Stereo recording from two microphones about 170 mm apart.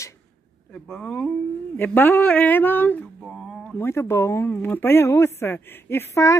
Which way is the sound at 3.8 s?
15° left (ahead or behind).